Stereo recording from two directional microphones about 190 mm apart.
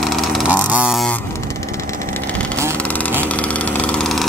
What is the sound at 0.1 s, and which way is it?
Vehicle, 5° right (ahead or behind).